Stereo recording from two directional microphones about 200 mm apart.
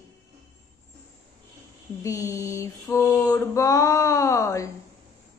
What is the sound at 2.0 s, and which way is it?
Mantra, 15° left (ahead or behind).